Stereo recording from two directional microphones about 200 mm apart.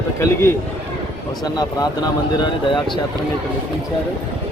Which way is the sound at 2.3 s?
25° left (ahead or behind).